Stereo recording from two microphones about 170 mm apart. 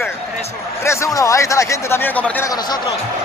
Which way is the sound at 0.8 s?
20° left (ahead or behind).